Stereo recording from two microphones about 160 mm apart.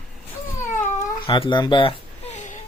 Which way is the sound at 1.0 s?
30° left (ahead or behind).